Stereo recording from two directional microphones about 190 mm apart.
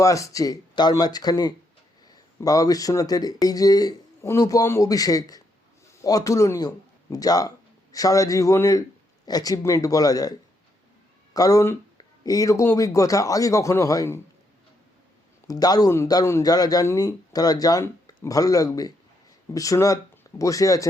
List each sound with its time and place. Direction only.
0.0 s speech: 15° left (ahead or behind)
11.3 s speech: 20° left (ahead or behind)
15.4 s speech: 20° left (ahead or behind)